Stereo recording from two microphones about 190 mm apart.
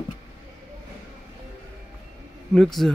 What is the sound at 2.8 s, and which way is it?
Speech, centre (ahead or behind).